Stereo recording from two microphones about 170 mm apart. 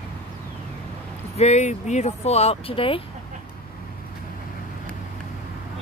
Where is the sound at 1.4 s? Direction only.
40° left (ahead or behind).